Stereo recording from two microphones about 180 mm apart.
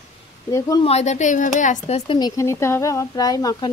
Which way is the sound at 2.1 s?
20° left (ahead or behind).